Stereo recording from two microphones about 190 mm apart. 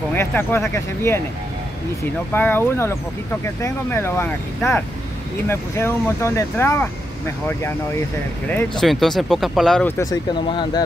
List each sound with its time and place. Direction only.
0.1 s speech: 10° left (ahead or behind)
2.3 s speech: 10° left (ahead or behind)
8.5 s speech: 5° left (ahead or behind)
9.9 s speech: 20° left (ahead or behind)